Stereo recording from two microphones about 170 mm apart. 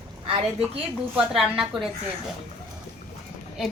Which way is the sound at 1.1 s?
5° right (ahead or behind).